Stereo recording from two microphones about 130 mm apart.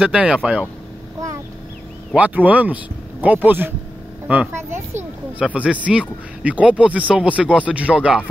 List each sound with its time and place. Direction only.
0.0 s speech: 10° right (ahead or behind)
2.1 s speech: 10° right (ahead or behind)